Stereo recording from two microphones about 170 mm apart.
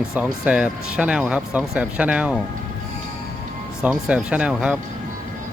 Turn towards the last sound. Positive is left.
turn(degrees=-5)  # may be behind; listen again after turning